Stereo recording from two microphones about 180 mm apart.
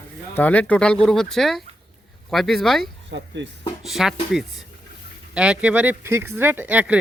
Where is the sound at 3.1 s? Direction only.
80° right.